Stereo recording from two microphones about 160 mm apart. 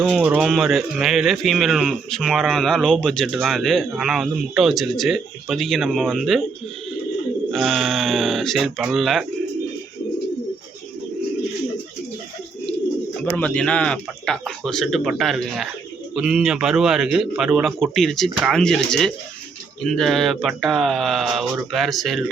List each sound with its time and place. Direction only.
0.0 s speech: 5° right (ahead or behind)
7.5 s speech: centre (ahead or behind)
13.3 s speech: 5° left (ahead or behind)